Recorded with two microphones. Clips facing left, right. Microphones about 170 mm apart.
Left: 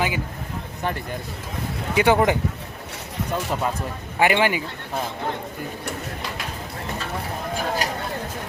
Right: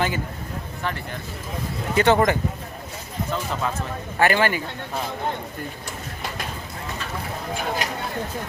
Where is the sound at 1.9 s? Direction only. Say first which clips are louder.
Even; 10° left (ahead or behind).